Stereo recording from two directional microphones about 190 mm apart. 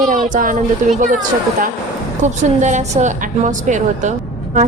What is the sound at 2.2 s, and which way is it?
A woman's voice, 40° right (ahead or behind).